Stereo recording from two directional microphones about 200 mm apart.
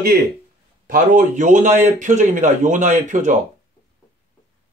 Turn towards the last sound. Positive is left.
turn(degrees=-40)  # may be behind; listen again after turning